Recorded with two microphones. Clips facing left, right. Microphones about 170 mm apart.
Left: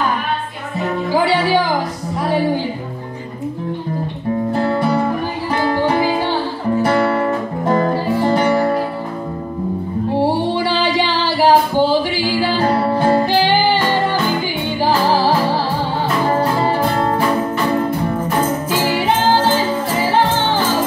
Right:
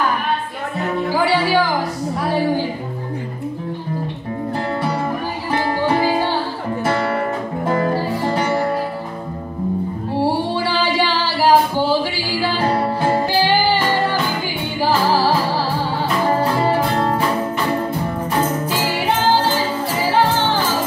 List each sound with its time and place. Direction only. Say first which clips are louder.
7.6 s music: left 3 dB; 35° left (ahead or behind)
10.1 s music: left 2 dB; 20° left (ahead or behind)